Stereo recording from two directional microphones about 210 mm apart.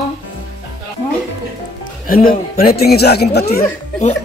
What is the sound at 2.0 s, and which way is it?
Speech, 45° left (ahead or behind).